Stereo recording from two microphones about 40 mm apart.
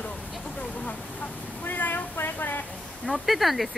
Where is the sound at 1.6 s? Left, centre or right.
Left.